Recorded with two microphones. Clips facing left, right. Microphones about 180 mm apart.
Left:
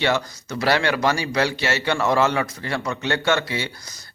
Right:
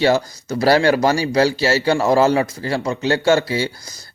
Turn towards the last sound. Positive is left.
turn(degrees=-35)  # may be behind; listen again after turning